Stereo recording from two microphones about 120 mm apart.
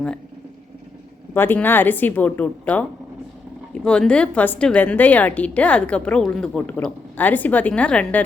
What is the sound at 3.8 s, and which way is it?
A woman's voice, 10° left (ahead or behind).